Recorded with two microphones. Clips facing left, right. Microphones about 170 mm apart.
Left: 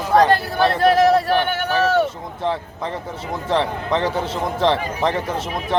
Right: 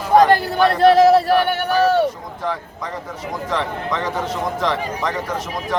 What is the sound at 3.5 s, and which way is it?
A man's voice, 30° left (ahead or behind).